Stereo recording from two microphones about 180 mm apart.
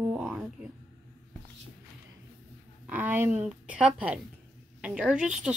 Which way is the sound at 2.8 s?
10° right (ahead or behind).